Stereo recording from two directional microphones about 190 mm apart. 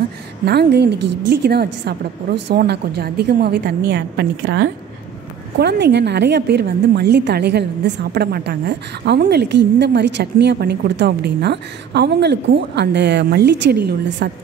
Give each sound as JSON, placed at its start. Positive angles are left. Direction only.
{"t": 0.5, "sound": "a woman's voice", "side_deg": -60}